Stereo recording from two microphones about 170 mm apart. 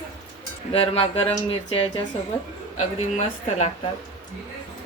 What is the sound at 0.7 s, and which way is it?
Speech, 35° left (ahead or behind).